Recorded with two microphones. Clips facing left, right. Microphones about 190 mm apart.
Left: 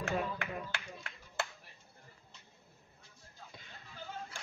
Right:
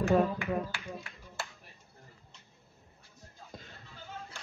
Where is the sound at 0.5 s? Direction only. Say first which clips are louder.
Right 8 dB; 55° right (ahead or behind).